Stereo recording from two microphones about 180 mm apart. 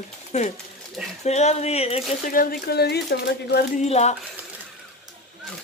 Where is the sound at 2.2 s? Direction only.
55° left (ahead or behind).